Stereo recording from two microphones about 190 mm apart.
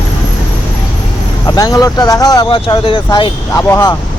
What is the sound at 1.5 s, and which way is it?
Speech, 20° left (ahead or behind).